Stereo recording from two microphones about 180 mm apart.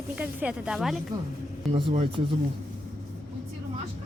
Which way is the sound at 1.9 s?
30° right (ahead or behind).